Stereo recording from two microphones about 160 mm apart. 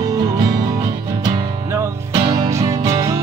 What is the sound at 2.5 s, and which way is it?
Music, 20° right (ahead or behind).